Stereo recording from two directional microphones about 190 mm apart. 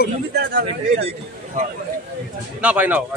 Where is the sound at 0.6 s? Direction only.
30° right (ahead or behind).